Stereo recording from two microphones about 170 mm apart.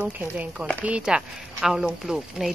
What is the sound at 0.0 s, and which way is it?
Speech, 10° right (ahead or behind).